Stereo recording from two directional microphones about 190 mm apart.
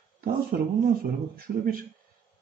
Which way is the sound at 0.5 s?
50° right (ahead or behind).